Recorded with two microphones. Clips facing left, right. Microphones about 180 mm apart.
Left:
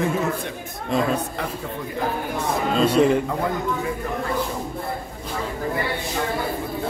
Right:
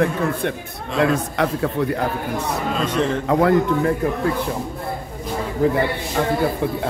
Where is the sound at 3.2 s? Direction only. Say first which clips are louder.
Right 8 dB; 75° right (ahead or behind).